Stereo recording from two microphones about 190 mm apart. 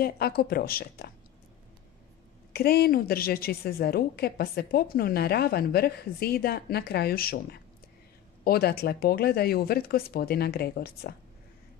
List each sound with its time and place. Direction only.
0.0 s speech: 55° left (ahead or behind)
2.5 s a woman's voice: 55° left (ahead or behind)